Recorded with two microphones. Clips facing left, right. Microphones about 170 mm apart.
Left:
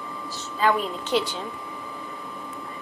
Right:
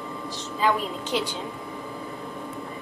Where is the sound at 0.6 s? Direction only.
15° right (ahead or behind).